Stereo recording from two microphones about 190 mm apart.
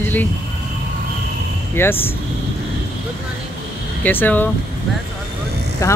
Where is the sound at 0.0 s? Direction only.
10° left (ahead or behind).